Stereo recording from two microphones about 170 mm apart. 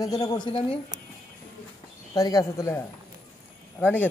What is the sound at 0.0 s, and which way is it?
Speech, 20° left (ahead or behind).